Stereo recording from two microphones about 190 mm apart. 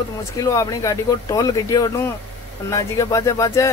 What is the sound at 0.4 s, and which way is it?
Speech, 15° left (ahead or behind).